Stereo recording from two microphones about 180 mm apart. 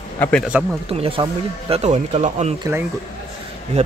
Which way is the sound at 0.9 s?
30° right (ahead or behind).